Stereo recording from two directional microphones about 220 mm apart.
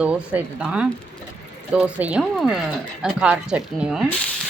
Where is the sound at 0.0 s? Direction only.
5° right (ahead or behind).